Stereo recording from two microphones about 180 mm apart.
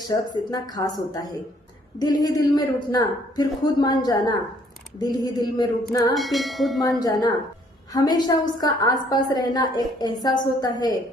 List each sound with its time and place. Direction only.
0.1 s a woman's voice: 20° left (ahead or behind)
6.1 s bell: centre (ahead or behind)
7.0 s a woman's voice: 20° left (ahead or behind)